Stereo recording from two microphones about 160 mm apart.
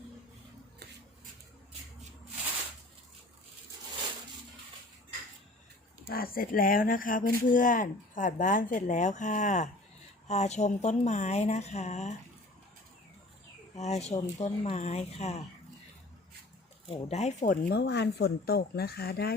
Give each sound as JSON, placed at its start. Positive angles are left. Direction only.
{"t": 6.1, "sound": "a woman's voice", "side_deg": 65}
{"t": 13.7, "sound": "a woman's voice", "side_deg": 45}
{"t": 16.9, "sound": "a woman's voice", "side_deg": 45}
{"t": 17.4, "sound": "speech", "side_deg": 60}